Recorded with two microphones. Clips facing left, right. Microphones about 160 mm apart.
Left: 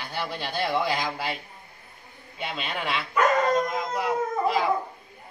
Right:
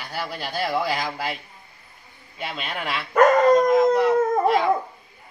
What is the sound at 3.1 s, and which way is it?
Dog, 50° right (ahead or behind).